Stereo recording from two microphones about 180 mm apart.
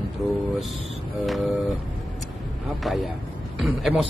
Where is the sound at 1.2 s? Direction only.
Centre (ahead or behind).